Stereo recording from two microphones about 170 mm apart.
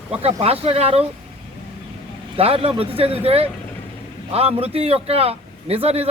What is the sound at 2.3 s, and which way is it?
Speech, 35° right (ahead or behind).